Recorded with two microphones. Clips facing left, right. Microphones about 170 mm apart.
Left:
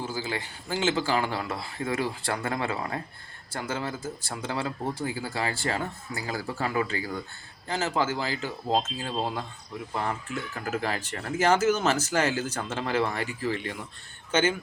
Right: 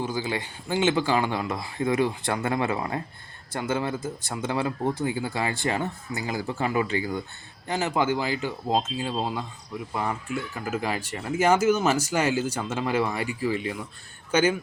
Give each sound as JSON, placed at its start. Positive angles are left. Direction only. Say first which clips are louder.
{"t": 0.0, "sound": "speech", "louder": "right 4 dB", "side_deg": -20}